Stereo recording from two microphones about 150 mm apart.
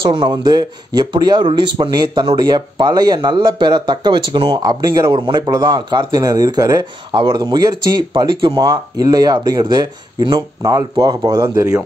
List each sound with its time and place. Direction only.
0.0 s speech: 30° right (ahead or behind)